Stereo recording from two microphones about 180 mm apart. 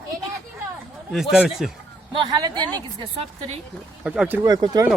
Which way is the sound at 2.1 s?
25° right (ahead or behind).